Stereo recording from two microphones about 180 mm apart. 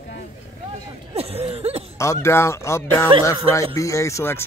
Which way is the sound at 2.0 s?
15° left (ahead or behind).